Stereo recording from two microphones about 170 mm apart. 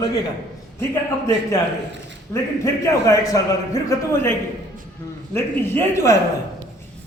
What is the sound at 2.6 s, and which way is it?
A man's voice, 20° left (ahead or behind).